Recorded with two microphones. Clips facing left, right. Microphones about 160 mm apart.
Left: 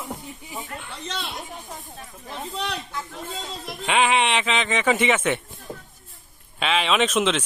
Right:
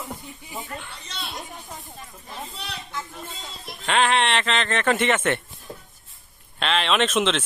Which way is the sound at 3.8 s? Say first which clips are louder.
Even; 10° left (ahead or behind).